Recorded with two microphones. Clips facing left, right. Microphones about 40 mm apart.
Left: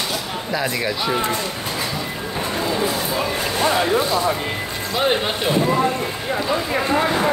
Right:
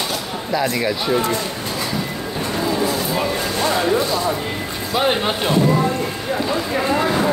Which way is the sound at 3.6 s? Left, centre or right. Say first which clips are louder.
Left 1 dB; centre.